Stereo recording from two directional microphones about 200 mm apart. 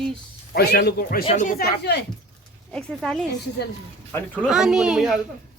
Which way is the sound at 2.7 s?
5° left (ahead or behind).